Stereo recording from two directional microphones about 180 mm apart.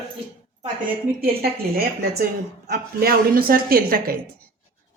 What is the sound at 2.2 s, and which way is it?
A woman's voice, 60° right (ahead or behind).